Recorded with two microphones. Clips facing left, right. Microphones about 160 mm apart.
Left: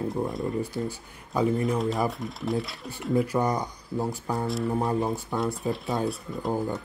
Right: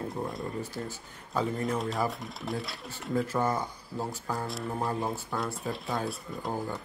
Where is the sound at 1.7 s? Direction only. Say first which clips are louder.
Left 4 dB; centre (ahead or behind).